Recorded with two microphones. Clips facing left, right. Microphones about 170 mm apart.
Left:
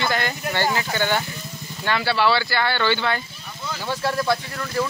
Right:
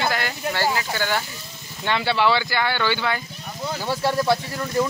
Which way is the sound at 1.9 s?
20° right (ahead or behind).